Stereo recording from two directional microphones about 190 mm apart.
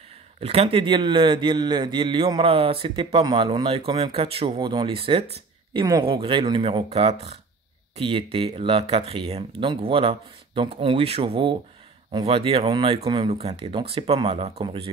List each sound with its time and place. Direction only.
0.4 s a man's voice: 30° right (ahead or behind)